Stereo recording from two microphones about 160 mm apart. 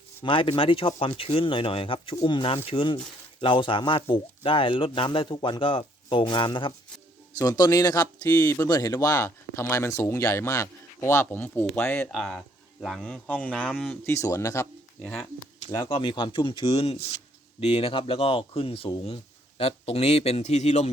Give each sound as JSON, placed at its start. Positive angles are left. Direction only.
{"t": 0.2, "sound": "speech", "side_deg": 35}
{"t": 12.1, "sound": "speech", "side_deg": 5}
{"t": 14.0, "sound": "speech", "side_deg": 20}
{"t": 15.0, "sound": "speech", "side_deg": 5}
{"t": 15.7, "sound": "speech", "side_deg": 25}